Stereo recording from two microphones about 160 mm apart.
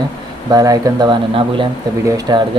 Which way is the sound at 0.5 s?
20° right (ahead or behind).